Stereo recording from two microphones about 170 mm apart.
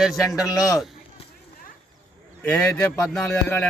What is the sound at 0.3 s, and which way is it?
Speech, 20° left (ahead or behind).